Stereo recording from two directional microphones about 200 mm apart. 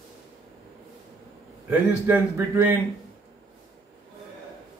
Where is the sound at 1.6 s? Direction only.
10° right (ahead or behind).